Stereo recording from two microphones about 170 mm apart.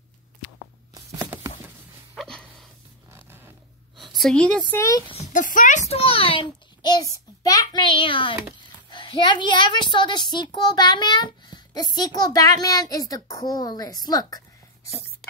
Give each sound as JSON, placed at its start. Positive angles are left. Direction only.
{"t": 0.9, "sound": "tearing", "side_deg": -20}
{"t": 2.1, "sound": "a sound", "side_deg": 5}
{"t": 3.1, "sound": "zipper", "side_deg": -15}
{"t": 4.0, "sound": "a woman's voice", "side_deg": 0}
{"t": 5.1, "sound": "a child's voice", "side_deg": 45}